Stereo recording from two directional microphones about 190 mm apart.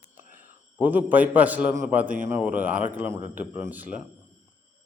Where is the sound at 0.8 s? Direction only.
10° right (ahead or behind).